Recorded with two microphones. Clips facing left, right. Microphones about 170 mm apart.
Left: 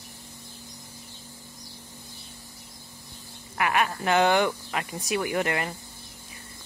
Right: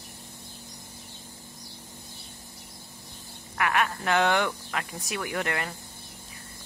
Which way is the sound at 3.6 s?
5° left (ahead or behind).